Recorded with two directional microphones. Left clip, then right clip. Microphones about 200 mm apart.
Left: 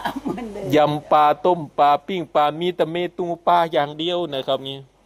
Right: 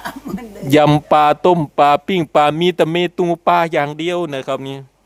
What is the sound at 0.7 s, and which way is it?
Speech, 50° right (ahead or behind).